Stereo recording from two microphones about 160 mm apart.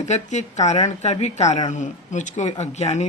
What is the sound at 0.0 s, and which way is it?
Speech, 45° left (ahead or behind).